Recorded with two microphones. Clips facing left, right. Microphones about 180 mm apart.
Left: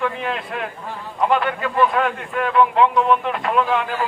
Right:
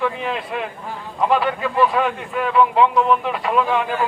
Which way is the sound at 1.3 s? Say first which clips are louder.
Right 2 dB; 5° right (ahead or behind).